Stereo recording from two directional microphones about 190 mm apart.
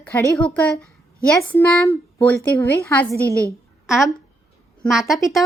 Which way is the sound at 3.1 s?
15° right (ahead or behind).